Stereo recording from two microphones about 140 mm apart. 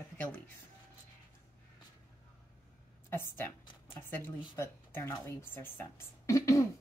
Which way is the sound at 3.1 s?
15° left (ahead or behind).